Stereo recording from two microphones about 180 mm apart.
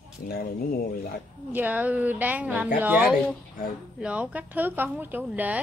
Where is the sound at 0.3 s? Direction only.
55° left (ahead or behind).